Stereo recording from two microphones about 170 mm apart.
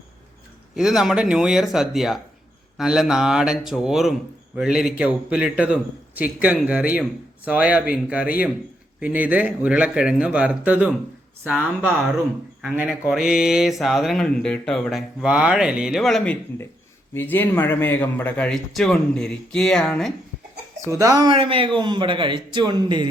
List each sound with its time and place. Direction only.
0.8 s a man's voice: centre (ahead or behind)
20.8 s speech: 20° right (ahead or behind)